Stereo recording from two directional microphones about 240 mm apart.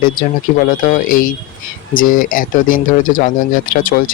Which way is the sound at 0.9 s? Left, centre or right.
Left.